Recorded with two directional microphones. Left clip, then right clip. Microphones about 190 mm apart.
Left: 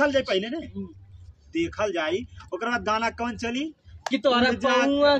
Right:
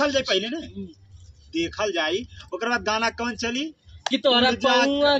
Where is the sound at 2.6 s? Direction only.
20° left (ahead or behind).